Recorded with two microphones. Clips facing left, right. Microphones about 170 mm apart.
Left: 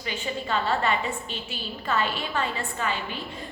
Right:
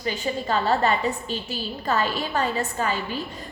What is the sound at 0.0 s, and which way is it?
A woman's voice, 40° right (ahead or behind).